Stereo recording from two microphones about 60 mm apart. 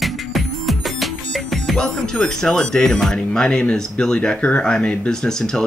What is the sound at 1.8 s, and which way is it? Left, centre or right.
Speech, centre.